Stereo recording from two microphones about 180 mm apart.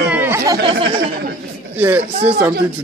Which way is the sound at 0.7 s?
25° right (ahead or behind).